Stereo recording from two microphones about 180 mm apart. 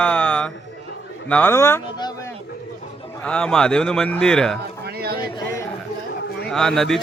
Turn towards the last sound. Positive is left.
turn(degrees=0)  # may be behind; listen again after turning